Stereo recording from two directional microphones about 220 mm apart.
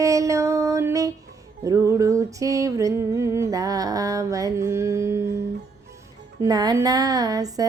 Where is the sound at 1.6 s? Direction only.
15° right (ahead or behind).